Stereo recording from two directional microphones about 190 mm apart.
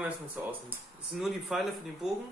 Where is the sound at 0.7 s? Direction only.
5° right (ahead or behind).